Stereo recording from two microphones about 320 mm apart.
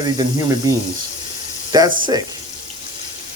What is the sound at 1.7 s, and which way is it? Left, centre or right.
Speech, centre.